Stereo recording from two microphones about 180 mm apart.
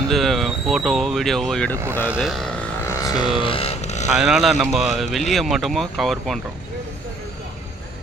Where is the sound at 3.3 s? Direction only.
30° left (ahead or behind).